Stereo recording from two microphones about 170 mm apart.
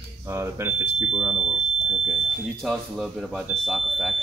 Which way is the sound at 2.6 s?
Centre (ahead or behind).